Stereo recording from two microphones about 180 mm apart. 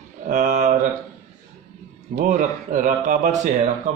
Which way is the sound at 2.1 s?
45° right (ahead or behind).